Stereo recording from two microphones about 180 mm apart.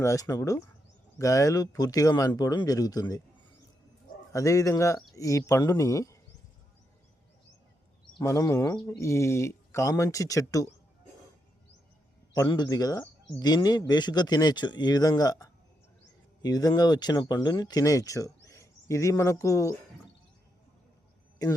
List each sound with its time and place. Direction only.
0.0 s speech: 20° left (ahead or behind)
4.3 s speech: 15° left (ahead or behind)
8.2 s speech: 15° left (ahead or behind)
12.3 s speech: 20° left (ahead or behind)